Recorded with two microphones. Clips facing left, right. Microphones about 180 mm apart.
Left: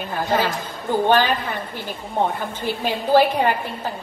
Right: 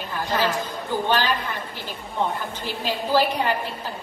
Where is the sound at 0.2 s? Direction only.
45° left (ahead or behind).